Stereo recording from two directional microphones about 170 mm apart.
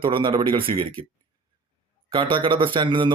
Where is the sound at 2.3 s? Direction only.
30° right (ahead or behind).